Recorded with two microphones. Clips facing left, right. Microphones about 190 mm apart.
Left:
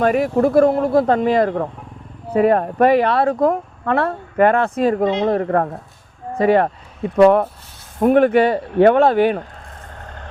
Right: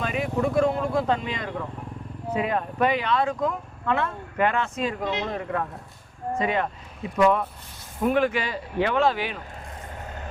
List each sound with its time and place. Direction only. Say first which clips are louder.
0.0 s speech: left 10 dB; 55° left (ahead or behind)
10.0 s vehicle: left 1 dB; 5° right (ahead or behind)